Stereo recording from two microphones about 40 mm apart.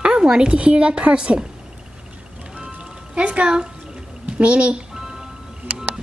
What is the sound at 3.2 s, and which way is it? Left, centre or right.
Speech, right.